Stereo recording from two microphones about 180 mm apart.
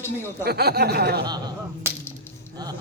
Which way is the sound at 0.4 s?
60° right (ahead or behind).